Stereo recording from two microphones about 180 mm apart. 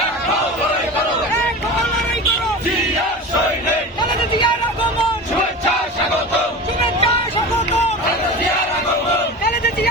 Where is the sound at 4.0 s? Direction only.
25° left (ahead or behind).